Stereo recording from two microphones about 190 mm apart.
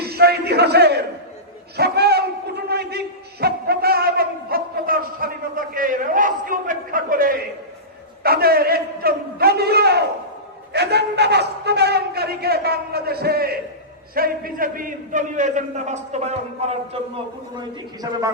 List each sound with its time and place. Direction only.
0.0 s a sound: 55° right (ahead or behind)
14.2 s a man's voice: 50° right (ahead or behind); by 17.0 s 30° right (ahead or behind)
17.6 s a man's voice: 20° right (ahead or behind)